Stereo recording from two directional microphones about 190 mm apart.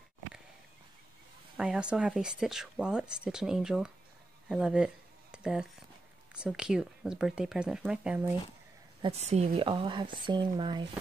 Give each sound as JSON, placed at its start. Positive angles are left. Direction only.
{"t": 1.6, "sound": "speech", "side_deg": -5}
{"t": 9.0, "sound": "speech", "side_deg": -35}